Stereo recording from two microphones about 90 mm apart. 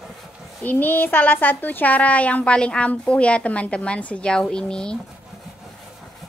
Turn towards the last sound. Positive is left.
turn(degrees=10)  # may be behind; listen again after turning